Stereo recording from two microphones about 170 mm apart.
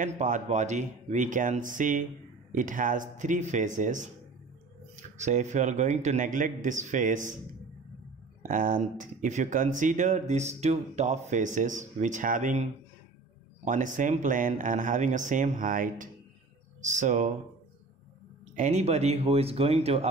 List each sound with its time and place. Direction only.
0.0 s speech: 45° right (ahead or behind)
8.4 s speech: 50° right (ahead or behind)
13.7 s speech: 50° right (ahead or behind)
18.6 s speech: 40° right (ahead or behind)